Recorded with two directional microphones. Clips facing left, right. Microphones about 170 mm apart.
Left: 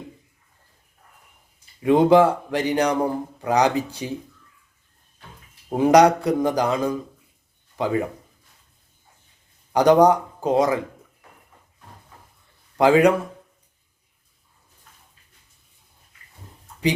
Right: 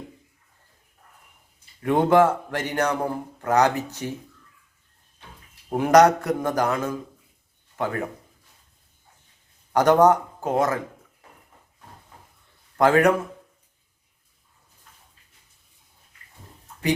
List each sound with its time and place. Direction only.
1.8 s speech: 15° left (ahead or behind)
5.6 s speech: 15° left (ahead or behind)
9.7 s speech: 15° left (ahead or behind)
12.7 s a man's voice: 15° left (ahead or behind)